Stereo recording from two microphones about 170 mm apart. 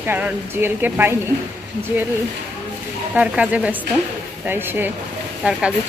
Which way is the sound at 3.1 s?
5° right (ahead or behind).